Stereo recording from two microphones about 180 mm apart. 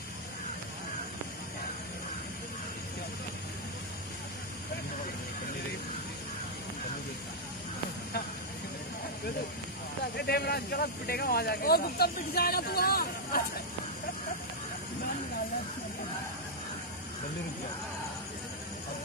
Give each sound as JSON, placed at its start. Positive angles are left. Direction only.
{"t": 10.1, "sound": "speech", "side_deg": 60}